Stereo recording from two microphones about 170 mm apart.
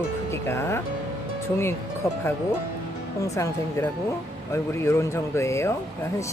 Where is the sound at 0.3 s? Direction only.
15° left (ahead or behind).